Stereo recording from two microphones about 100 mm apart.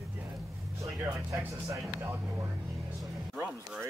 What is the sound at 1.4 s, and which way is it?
Speech, 25° right (ahead or behind).